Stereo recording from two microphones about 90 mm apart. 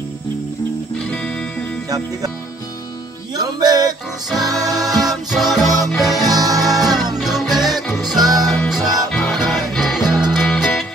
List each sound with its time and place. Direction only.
3.3 s music: 45° right (ahead or behind)
4.3 s music: centre (ahead or behind)
6.3 s music: 45° right (ahead or behind)
6.6 s music: centre (ahead or behind)
8.2 s music: 45° right (ahead or behind)
8.5 s music: centre (ahead or behind)